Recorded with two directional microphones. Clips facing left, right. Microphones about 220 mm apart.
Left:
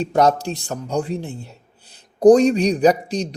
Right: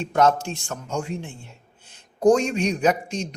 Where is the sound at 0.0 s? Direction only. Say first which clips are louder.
Left 3 dB; 35° left (ahead or behind).